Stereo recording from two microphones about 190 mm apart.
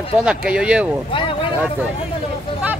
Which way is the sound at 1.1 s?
25° left (ahead or behind).